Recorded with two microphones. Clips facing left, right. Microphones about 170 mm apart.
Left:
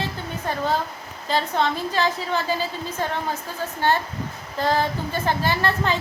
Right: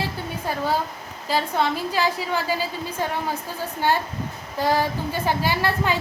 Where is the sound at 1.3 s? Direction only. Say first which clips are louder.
Even; 10° right (ahead or behind).